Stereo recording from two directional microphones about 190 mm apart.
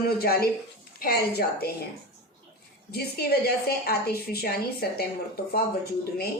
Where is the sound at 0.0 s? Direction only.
55° left (ahead or behind).